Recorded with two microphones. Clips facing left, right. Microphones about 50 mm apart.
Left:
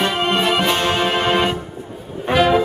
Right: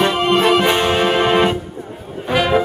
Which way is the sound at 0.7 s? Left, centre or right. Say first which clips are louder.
Right 3 dB; centre.